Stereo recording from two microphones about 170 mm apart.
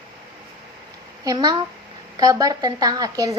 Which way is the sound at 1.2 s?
25° right (ahead or behind).